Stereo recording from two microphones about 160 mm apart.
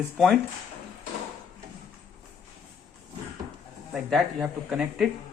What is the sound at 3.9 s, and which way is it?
Speech, 5° right (ahead or behind).